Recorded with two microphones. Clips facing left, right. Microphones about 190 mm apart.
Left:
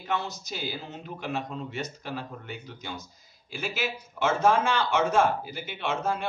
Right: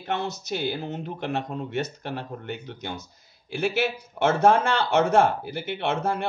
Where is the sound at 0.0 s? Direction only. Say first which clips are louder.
Right 3 dB; 60° right (ahead or behind).